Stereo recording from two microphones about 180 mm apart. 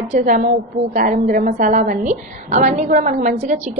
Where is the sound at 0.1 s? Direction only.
40° right (ahead or behind).